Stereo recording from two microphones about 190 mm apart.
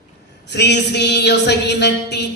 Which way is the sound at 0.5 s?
65° left (ahead or behind).